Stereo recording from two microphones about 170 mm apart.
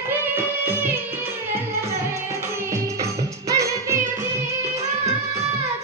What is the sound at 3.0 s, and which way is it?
Music, 15° right (ahead or behind).